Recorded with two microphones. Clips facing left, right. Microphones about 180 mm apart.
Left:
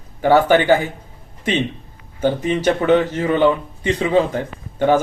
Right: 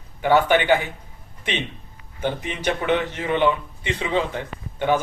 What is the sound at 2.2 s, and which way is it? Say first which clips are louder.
A man's voice: left 8 dB; 40° left (ahead or behind).